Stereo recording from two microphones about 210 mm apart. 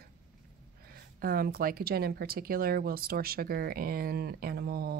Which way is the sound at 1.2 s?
45° right (ahead or behind).